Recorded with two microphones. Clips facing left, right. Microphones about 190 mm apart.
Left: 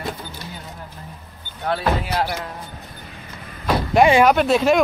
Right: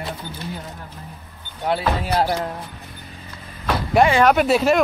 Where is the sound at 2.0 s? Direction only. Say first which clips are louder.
Right 3 dB; 30° right (ahead or behind).